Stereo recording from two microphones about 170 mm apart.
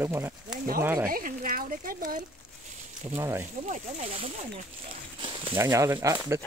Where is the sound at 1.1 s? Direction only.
55° right (ahead or behind).